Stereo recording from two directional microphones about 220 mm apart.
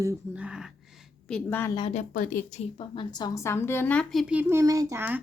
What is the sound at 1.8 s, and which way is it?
A woman's voice, 30° left (ahead or behind).